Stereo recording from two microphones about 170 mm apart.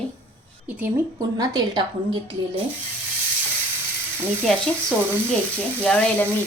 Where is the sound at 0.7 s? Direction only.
10° right (ahead or behind).